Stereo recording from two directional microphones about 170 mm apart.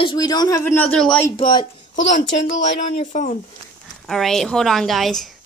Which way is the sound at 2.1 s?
90° left.